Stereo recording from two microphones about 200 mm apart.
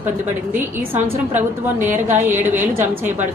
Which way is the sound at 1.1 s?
10° right (ahead or behind).